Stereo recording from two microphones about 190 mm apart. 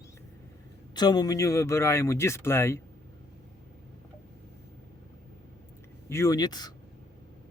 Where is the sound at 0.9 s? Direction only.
20° left (ahead or behind).